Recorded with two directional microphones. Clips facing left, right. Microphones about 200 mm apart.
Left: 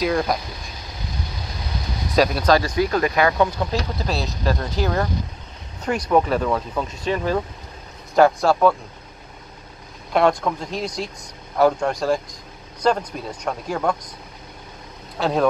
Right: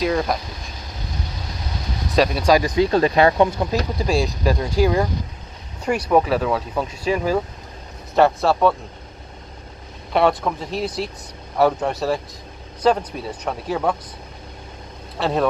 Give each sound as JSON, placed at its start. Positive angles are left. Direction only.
{"t": 0.0, "sound": "speech", "side_deg": 0}
{"t": 2.1, "sound": "speech", "side_deg": 0}
{"t": 2.4, "sound": "speech", "side_deg": -15}
{"t": 4.0, "sound": "speech", "side_deg": -10}
{"t": 10.1, "sound": "speech", "side_deg": -5}
{"t": 15.1, "sound": "speech", "side_deg": 0}